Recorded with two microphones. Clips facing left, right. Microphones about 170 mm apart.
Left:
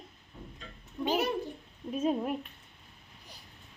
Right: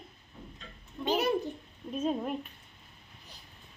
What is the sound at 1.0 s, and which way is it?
A child's voice, 10° left (ahead or behind).